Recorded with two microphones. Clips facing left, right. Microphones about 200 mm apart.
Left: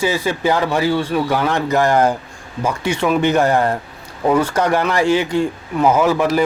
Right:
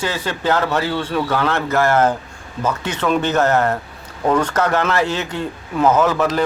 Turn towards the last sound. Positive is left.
turn(degrees=10)  # may be behind; listen again after turning